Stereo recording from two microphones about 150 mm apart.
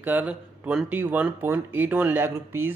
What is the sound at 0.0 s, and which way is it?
Speech, 10° right (ahead or behind).